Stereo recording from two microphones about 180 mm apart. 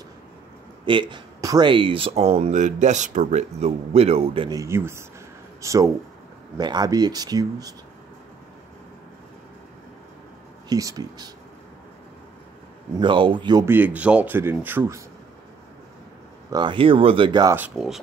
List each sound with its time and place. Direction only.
0.8 s speech: 25° right (ahead or behind)
4.6 s speech: 15° right (ahead or behind)
10.7 s speech: 20° right (ahead or behind)
13.0 s speech: 25° right (ahead or behind)
13.7 s speech: 10° right (ahead or behind)
16.4 s speech: 25° right (ahead or behind)
17.6 s speech: 5° right (ahead or behind)